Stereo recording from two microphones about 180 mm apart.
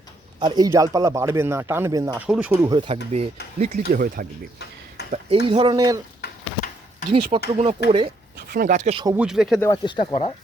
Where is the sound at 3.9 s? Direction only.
50° right (ahead or behind).